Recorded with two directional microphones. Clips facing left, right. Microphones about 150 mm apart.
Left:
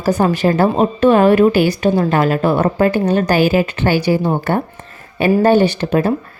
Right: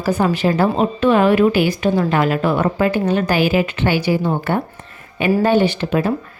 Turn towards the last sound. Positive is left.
turn(degrees=40)  # may be behind; listen again after turning